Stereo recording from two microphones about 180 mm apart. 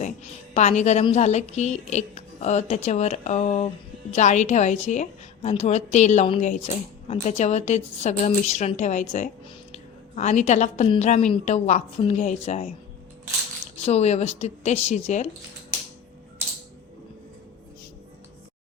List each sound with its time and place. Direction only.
0.0 s a woman's voice: 40° left (ahead or behind)
13.8 s speech: 35° left (ahead or behind)